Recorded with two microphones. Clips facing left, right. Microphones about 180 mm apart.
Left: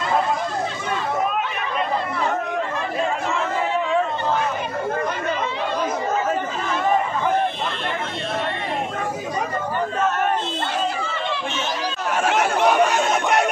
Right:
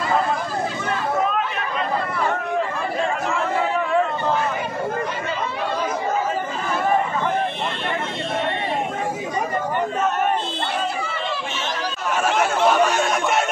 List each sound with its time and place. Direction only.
12.2 s chatter: 15° left (ahead or behind)